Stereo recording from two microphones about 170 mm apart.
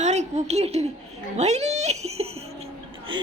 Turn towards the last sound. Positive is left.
turn(degrees=-30)  # may be behind; listen again after turning